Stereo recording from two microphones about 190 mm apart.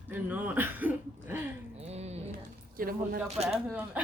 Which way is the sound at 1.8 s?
35° right (ahead or behind).